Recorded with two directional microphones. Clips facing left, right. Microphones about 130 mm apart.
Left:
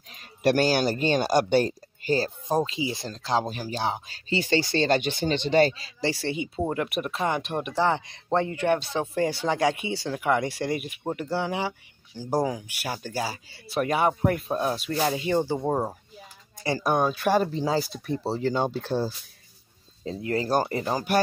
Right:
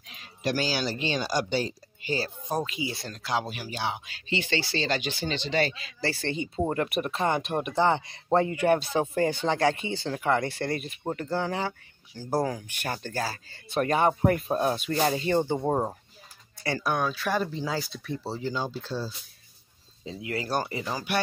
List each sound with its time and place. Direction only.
0.4 s speech: 60° left (ahead or behind); by 5.9 s 40° left (ahead or behind)
5.9 s speech: 20° left (ahead or behind)
6.2 s speech: 10° left (ahead or behind)
16.8 s speech: 40° left (ahead or behind)
18.4 s speech: 60° left (ahead or behind)
20.1 s speech: 40° left (ahead or behind)